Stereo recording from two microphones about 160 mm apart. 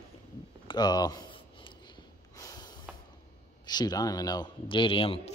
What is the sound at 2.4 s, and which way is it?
Snort, 25° left (ahead or behind).